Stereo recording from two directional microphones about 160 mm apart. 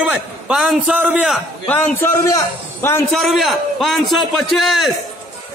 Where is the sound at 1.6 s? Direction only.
15° left (ahead or behind).